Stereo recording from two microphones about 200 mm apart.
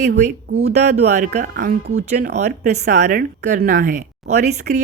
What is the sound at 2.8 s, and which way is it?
A woman's voice, 50° right (ahead or behind).